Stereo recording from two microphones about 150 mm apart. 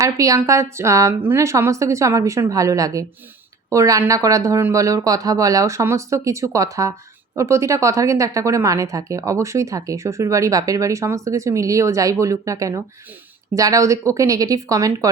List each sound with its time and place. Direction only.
0.0 s a woman's voice: 20° right (ahead or behind)